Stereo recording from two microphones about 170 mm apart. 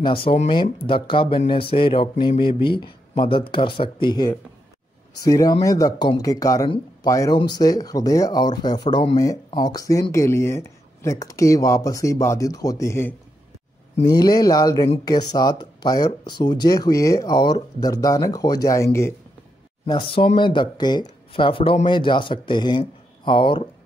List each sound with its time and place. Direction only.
0.0 s speech: 30° left (ahead or behind); by 13.1 s 15° left (ahead or behind)
14.1 s speech: 25° left (ahead or behind)
19.9 s speech: 30° left (ahead or behind)